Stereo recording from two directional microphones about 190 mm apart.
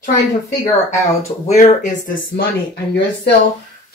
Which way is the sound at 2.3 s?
60° left (ahead or behind).